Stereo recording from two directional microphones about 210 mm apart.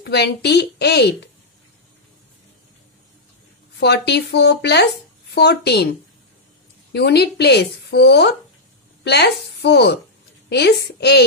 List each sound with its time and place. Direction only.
0.0 s speech: 50° left (ahead or behind)
3.8 s speech: 50° left (ahead or behind)
6.9 s a woman's voice: 50° left (ahead or behind)